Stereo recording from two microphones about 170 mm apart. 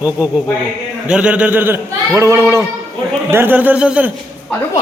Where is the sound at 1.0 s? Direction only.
5° right (ahead or behind).